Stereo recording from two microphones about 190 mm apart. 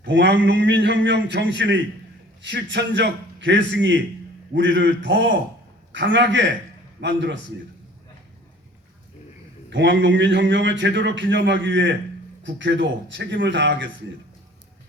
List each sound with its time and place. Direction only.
0.1 s a man's voice: 70° right (ahead or behind)
9.6 s a man's voice: 70° right (ahead or behind)